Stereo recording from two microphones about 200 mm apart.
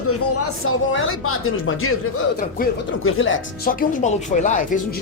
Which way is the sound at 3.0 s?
90° left.